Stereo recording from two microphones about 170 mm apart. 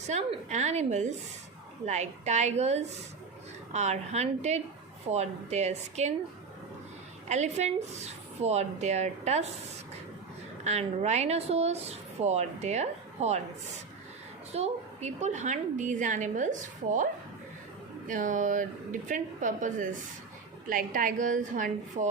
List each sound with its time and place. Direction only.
0.1 s a woman's voice: 40° right (ahead or behind)
7.3 s speech: 40° right (ahead or behind)
10.6 s speech: 40° right (ahead or behind)
14.5 s a woman's voice: 40° right (ahead or behind)
18.1 s a woman's voice: 50° right (ahead or behind)